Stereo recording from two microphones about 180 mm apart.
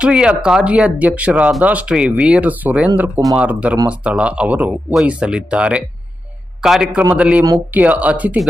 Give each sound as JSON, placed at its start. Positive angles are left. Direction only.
{"t": 0.0, "sound": "speech", "side_deg": -5}